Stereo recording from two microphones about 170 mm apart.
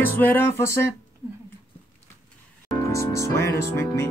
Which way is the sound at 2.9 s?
15° left (ahead or behind).